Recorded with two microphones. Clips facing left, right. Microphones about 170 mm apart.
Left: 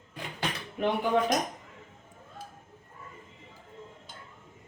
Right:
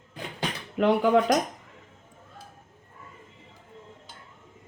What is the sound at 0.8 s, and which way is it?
Speech, 80° right.